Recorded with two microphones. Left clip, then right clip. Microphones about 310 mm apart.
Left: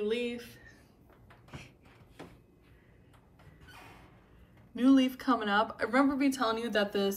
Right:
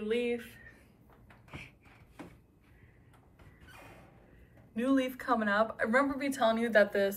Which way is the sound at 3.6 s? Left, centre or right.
Centre.